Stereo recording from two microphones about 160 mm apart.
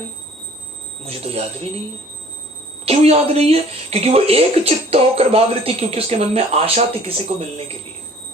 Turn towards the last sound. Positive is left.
turn(degrees=-45)  # may be behind; listen again after turning